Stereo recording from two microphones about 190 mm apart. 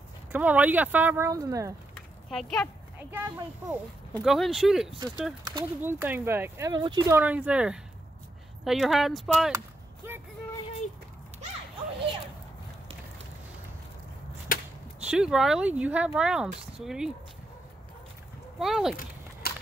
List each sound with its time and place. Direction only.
0.3 s speech: 10° right (ahead or behind)
2.2 s speech: centre (ahead or behind)
3.1 s speech: 10° right (ahead or behind)
5.4 s speech: 25° right (ahead or behind)
5.8 s speech: 10° right (ahead or behind)
7.2 s speech: 5° right (ahead or behind)
14.5 s whip: 50° left (ahead or behind)
15.0 s speech: 5° right (ahead or behind)
18.6 s speech: centre (ahead or behind)
19.4 s a sound: 55° left (ahead or behind)